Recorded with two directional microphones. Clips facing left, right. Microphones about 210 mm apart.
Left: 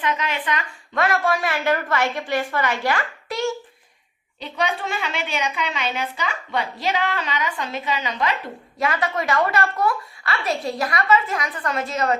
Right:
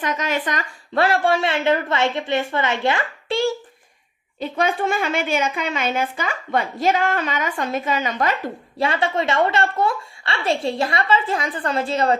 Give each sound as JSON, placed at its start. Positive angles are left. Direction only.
{"t": 0.0, "sound": "a woman's voice", "side_deg": -45}
{"t": 4.4, "sound": "a woman's voice", "side_deg": -50}
{"t": 8.8, "sound": "a woman's voice", "side_deg": -30}